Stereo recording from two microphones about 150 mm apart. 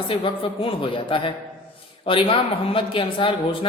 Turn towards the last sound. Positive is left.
turn(degrees=35)  # may be behind; listen again after turning